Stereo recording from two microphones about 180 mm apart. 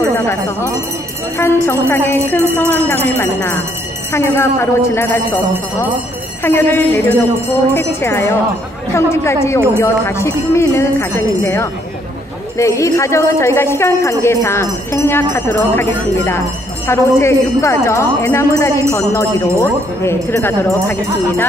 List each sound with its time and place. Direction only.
1.4 s a woman's voice: 15° left (ahead or behind)
6.4 s a woman's voice: 10° left (ahead or behind)